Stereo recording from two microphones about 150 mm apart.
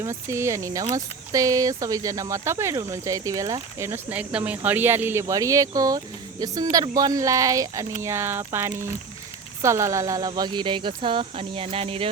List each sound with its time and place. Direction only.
0.0 s speech: 20° right (ahead or behind); by 12.0 s 40° right (ahead or behind)